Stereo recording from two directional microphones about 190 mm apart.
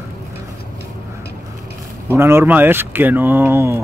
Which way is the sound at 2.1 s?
15° right (ahead or behind).